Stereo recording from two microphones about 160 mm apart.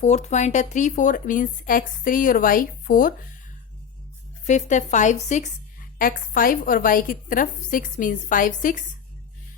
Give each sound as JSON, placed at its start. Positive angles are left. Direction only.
{"t": 0.0, "sound": "speech", "side_deg": 45}
{"t": 4.4, "sound": "a woman's voice", "side_deg": 50}
{"t": 6.0, "sound": "speech", "side_deg": 60}